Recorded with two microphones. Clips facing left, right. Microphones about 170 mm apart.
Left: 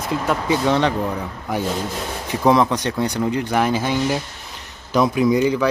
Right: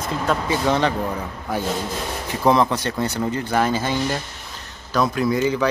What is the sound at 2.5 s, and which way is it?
Speech, 15° left (ahead or behind).